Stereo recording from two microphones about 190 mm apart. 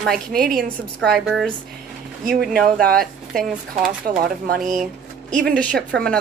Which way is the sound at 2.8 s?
50° right (ahead or behind).